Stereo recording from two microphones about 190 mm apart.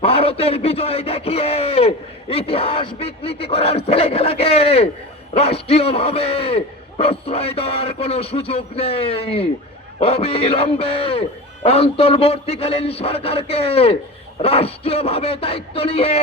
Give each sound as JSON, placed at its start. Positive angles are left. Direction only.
{"t": 0.0, "sound": "a man's voice", "side_deg": 30}